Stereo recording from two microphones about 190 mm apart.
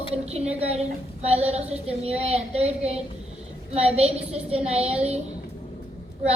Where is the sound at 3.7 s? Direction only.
35° right (ahead or behind).